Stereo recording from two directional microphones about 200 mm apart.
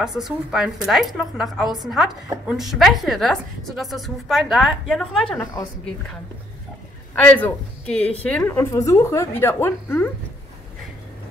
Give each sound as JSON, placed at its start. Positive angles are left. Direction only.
{"t": 0.0, "sound": "a woman's voice", "side_deg": 0}
{"t": 7.2, "sound": "a woman's voice", "side_deg": 10}